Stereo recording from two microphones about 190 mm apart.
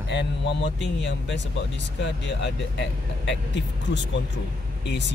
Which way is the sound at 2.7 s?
70° left (ahead or behind).